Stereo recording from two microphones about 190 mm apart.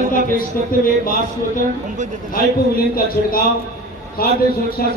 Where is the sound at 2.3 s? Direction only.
50° left (ahead or behind).